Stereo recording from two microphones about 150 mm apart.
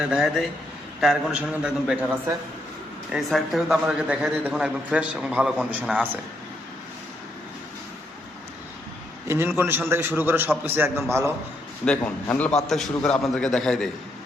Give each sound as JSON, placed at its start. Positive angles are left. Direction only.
{"t": 0.0, "sound": "a man's voice", "side_deg": -5}
{"t": 9.2, "sound": "a man's voice", "side_deg": -15}
{"t": 11.9, "sound": "a man's voice", "side_deg": 10}